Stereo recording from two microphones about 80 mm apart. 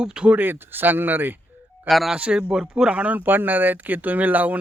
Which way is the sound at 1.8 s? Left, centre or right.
Centre.